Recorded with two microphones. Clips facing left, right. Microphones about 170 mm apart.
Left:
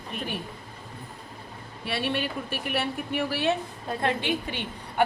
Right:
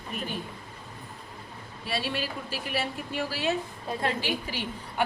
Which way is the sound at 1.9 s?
60° left (ahead or behind).